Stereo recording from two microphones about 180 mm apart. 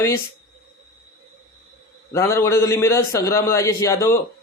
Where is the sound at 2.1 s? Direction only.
15° left (ahead or behind).